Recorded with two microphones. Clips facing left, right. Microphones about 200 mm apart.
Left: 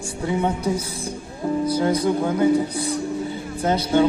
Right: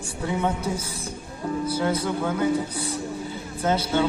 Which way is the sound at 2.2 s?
35° left (ahead or behind).